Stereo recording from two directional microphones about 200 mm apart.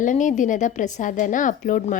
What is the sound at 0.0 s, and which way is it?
Speech, 40° left (ahead or behind).